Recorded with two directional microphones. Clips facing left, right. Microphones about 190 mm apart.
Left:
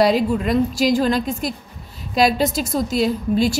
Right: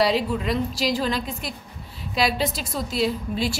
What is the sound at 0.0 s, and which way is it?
A woman's voice, 45° left (ahead or behind).